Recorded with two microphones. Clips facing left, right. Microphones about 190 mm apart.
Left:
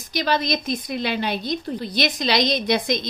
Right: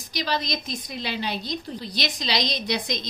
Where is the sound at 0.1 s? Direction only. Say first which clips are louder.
Left 5 dB; 55° left (ahead or behind).